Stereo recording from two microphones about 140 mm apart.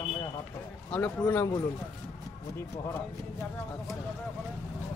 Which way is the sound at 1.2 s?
25° left (ahead or behind).